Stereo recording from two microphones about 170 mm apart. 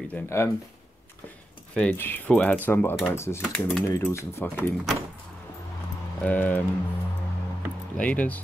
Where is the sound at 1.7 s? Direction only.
10° left (ahead or behind).